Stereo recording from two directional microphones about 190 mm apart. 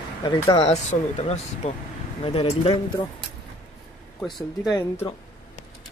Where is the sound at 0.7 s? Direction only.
35° left (ahead or behind).